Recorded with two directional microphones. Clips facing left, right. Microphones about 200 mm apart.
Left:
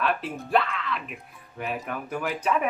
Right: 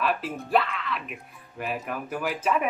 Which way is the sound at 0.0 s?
Centre (ahead or behind).